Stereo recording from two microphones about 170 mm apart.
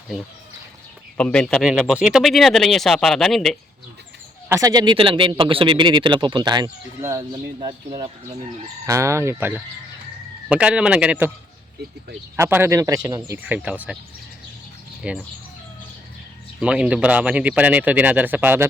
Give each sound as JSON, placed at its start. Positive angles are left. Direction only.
{"t": 1.1, "sound": "speech", "side_deg": 5}
{"t": 4.4, "sound": "speech", "side_deg": -20}
{"t": 8.9, "sound": "speech", "side_deg": -15}
{"t": 12.4, "sound": "speech", "side_deg": -15}
{"t": 15.0, "sound": "speech", "side_deg": -5}
{"t": 16.6, "sound": "speech", "side_deg": -5}